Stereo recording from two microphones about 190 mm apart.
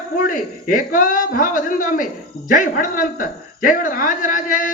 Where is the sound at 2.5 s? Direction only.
45° left (ahead or behind).